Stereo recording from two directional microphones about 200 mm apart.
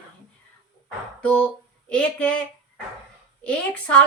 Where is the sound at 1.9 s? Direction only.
5° left (ahead or behind).